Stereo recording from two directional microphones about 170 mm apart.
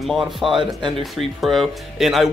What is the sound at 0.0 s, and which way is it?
Speech, centre (ahead or behind).